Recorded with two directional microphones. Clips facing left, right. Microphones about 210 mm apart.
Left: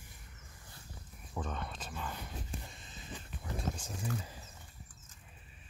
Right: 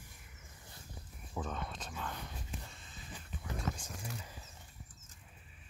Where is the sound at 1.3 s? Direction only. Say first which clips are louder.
Even; centre (ahead or behind).